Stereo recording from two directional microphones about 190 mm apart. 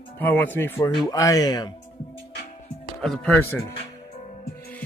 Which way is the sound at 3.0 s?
5° left (ahead or behind).